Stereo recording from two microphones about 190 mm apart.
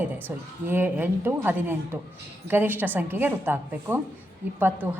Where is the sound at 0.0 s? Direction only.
10° right (ahead or behind).